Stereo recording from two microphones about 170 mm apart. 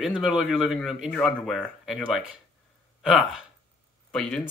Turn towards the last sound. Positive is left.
turn(degrees=5)  # may be behind; listen again after turning